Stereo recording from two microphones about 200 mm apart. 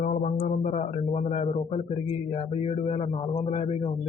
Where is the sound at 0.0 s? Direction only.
40° left (ahead or behind).